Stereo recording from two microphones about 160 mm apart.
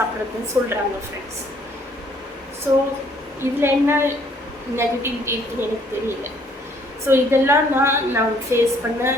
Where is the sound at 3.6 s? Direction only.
15° right (ahead or behind).